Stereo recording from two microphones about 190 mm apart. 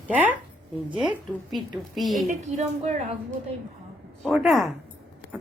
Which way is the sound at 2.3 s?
35° right (ahead or behind).